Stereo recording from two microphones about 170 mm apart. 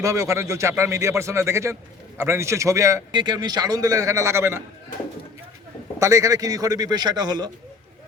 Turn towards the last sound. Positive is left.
turn(degrees=-25)  # may be behind; listen again after turning